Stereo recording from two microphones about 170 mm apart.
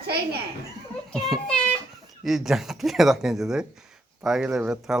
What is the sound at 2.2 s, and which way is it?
Speech, centre (ahead or behind).